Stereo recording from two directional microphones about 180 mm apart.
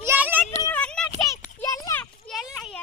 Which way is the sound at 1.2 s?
20° left (ahead or behind).